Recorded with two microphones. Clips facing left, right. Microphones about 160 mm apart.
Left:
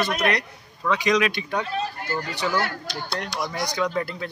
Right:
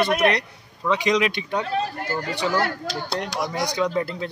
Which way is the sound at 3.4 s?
20° right (ahead or behind).